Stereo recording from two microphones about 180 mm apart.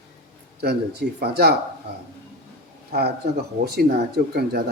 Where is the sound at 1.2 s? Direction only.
60° right (ahead or behind).